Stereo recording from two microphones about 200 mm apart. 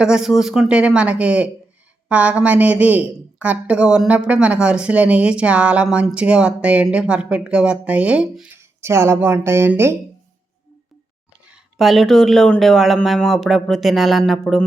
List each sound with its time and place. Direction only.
0.0 s a woman's voice: 5° right (ahead or behind)
11.4 s speech: centre (ahead or behind)